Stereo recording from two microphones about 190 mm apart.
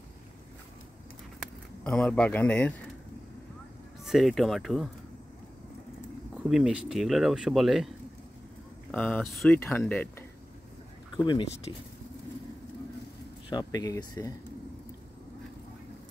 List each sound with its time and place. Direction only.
1.9 s speech: 5° left (ahead or behind)
4.0 s speech: centre (ahead or behind)
6.5 s speech: 5° right (ahead or behind)
8.9 s speech: 5° left (ahead or behind)
11.2 s speech: 25° left (ahead or behind)
13.5 s speech: 20° left (ahead or behind)